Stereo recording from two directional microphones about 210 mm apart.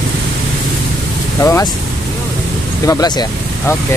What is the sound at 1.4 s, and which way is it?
Vehicle, 15° left (ahead or behind).